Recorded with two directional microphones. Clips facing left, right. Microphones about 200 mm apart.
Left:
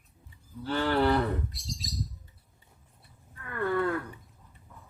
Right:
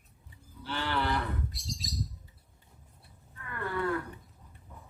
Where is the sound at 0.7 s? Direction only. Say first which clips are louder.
Left 7 dB; 45° left (ahead or behind).